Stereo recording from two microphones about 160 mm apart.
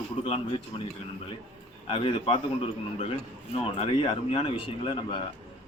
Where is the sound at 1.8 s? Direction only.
35° left (ahead or behind).